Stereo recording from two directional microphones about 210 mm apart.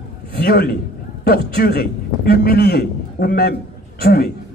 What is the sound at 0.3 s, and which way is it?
A man's voice, 45° left (ahead or behind).